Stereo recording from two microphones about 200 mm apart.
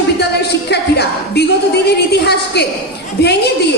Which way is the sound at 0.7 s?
55° left (ahead or behind).